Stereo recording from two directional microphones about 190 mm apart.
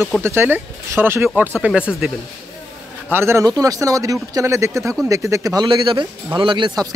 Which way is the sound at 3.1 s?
15° right (ahead or behind).